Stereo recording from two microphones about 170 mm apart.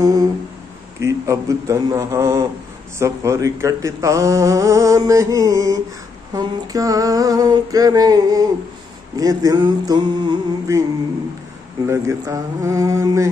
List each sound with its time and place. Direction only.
0.0 s humming: 20° right (ahead or behind)
1.0 s a man's voice: 20° right (ahead or behind)
11.9 s speech: 15° right (ahead or behind)